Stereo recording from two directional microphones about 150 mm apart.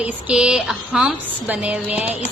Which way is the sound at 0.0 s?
5° right (ahead or behind).